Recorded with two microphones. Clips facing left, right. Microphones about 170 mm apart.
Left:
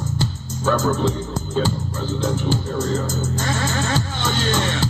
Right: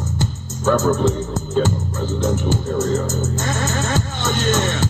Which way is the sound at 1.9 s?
45° right (ahead or behind).